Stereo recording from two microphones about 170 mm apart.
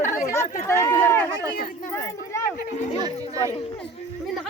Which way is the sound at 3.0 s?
20° right (ahead or behind).